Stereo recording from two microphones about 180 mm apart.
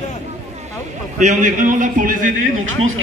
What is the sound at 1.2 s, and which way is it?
A man's voice, 45° right (ahead or behind).